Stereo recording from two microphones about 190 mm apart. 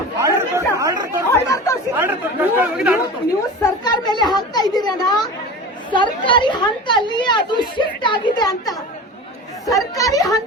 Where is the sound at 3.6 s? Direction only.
20° left (ahead or behind).